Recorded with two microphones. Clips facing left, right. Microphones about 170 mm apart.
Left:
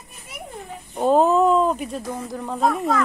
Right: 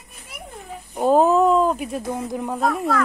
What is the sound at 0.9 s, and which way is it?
Speech, centre (ahead or behind).